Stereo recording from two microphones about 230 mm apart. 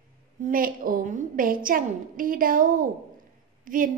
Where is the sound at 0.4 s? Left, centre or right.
Right.